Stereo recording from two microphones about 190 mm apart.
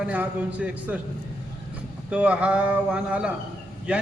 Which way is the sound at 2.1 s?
5° right (ahead or behind).